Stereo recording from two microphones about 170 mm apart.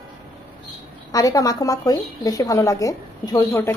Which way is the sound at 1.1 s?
20° left (ahead or behind).